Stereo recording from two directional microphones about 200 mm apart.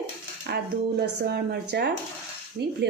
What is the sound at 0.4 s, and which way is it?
Speech, 55° right (ahead or behind).